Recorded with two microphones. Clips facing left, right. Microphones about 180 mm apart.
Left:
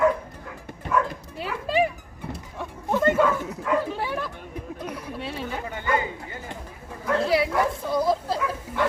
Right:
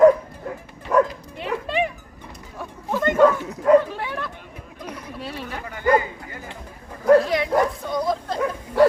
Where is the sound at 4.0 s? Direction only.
10° left (ahead or behind).